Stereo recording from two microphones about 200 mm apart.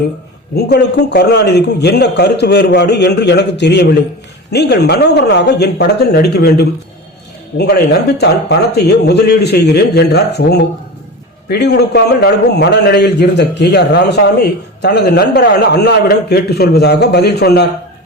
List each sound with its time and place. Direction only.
0.5 s a man's voice: 55° left (ahead or behind)